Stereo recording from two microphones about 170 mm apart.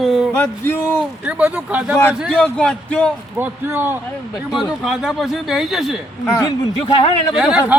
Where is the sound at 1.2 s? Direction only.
10° right (ahead or behind).